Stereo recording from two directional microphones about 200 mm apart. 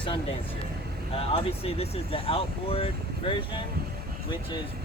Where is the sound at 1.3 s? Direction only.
30° left (ahead or behind).